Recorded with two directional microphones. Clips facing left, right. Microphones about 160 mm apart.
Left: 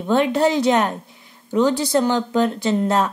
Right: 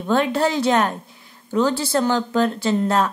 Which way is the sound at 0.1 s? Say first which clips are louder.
Left 2 dB; 20° left (ahead or behind).